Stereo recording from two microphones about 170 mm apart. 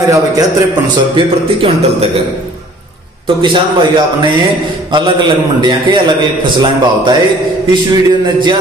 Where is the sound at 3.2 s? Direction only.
30° right (ahead or behind).